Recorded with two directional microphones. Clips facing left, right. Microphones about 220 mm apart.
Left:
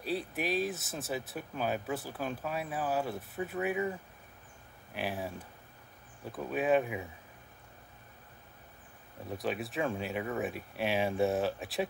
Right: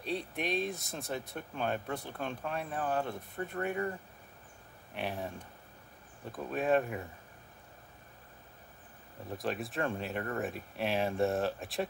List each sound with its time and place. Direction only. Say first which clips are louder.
0.0 s speech: left 1 dB; 5° left (ahead or behind)
4.9 s speech: left 1 dB; centre (ahead or behind)
6.3 s speech: left 1 dB; centre (ahead or behind)
9.4 s speech: left 1 dB; centre (ahead or behind)